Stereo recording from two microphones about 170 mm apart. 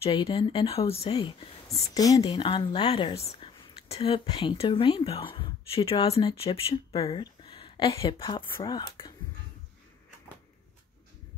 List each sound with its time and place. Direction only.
0.0 s speech: 35° left (ahead or behind)